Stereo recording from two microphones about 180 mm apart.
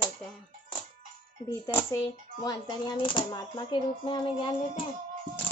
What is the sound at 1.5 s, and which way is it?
Speech, 15° left (ahead or behind).